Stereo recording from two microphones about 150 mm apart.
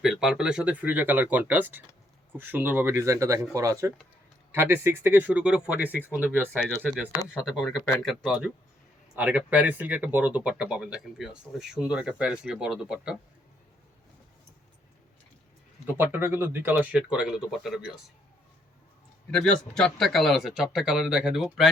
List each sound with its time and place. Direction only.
0.0 s speech: 5° right (ahead or behind)
15.9 s speech: 15° right (ahead or behind)
19.3 s speech: 5° left (ahead or behind)